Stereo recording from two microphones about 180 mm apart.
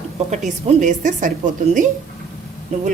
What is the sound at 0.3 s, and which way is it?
A woman's voice, 45° right (ahead or behind).